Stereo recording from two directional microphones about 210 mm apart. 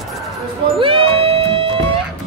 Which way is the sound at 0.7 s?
25° right (ahead or behind).